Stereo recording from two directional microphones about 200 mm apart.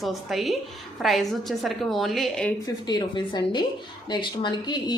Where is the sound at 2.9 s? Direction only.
20° left (ahead or behind).